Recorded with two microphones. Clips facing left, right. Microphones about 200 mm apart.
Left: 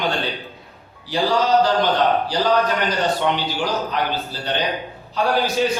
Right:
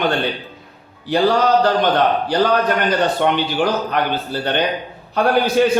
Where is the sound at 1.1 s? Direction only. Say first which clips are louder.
Right 3 dB; 55° right (ahead or behind).